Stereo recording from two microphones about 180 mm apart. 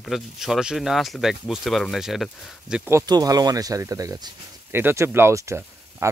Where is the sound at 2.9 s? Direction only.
20° right (ahead or behind).